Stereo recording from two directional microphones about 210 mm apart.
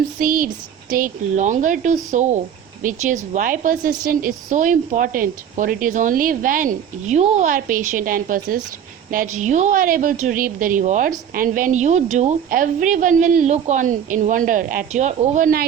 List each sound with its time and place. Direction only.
0.2 s a woman's voice: 45° right (ahead or behind)